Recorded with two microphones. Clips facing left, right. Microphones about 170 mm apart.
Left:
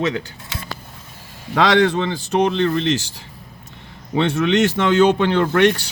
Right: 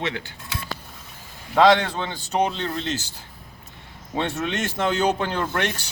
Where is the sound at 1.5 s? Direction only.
75° left (ahead or behind).